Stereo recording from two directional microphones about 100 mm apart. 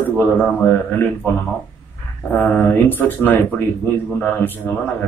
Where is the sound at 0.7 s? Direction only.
15° left (ahead or behind).